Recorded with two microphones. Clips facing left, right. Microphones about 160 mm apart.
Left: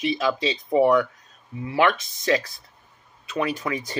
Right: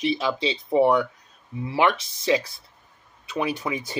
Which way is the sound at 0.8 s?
5° right (ahead or behind).